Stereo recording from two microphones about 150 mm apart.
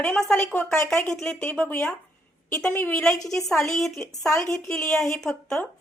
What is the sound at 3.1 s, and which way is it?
Speech, 25° left (ahead or behind).